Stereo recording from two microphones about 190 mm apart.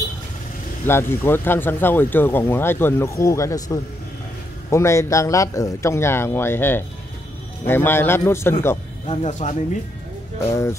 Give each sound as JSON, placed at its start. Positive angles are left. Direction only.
{"t": 0.8, "sound": "speech", "side_deg": 10}
{"t": 9.0, "sound": "speech", "side_deg": 35}
{"t": 10.5, "sound": "speech", "side_deg": 15}